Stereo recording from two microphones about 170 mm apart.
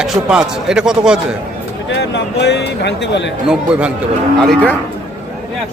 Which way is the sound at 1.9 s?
85° left.